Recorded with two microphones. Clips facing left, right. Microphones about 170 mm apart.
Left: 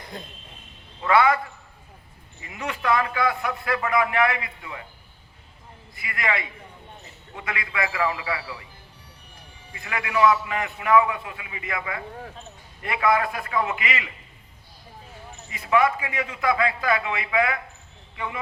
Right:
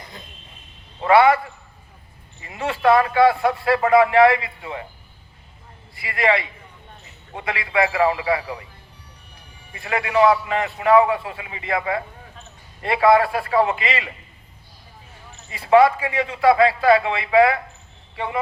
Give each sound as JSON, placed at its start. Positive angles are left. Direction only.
{"t": 1.0, "sound": "a man's voice", "side_deg": -30}
{"t": 2.4, "sound": "a man's voice", "side_deg": -35}
{"t": 6.0, "sound": "a man's voice", "side_deg": -30}
{"t": 9.7, "sound": "a man's voice", "side_deg": -30}
{"t": 15.6, "sound": "a man's voice", "side_deg": -30}